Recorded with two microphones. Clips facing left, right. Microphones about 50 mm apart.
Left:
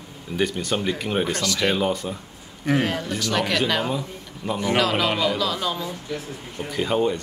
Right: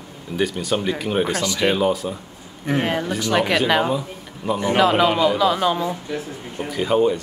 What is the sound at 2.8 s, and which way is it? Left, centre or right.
Speech, centre.